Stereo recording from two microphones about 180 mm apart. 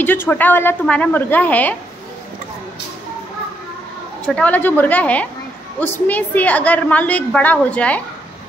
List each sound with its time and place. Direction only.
0.0 s a woman's voice: 10° left (ahead or behind)
4.4 s a woman's voice: 10° left (ahead or behind)